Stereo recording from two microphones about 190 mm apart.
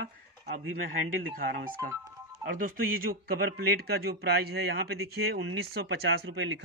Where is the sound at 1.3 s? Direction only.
50° right (ahead or behind).